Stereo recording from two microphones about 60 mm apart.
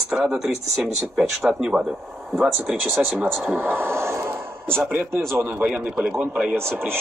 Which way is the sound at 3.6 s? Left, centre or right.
Right.